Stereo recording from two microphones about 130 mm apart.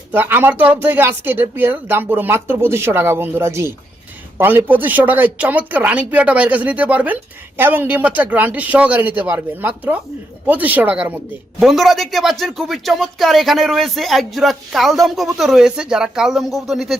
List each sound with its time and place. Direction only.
0.1 s speech: 15° right (ahead or behind)
11.6 s speech: centre (ahead or behind)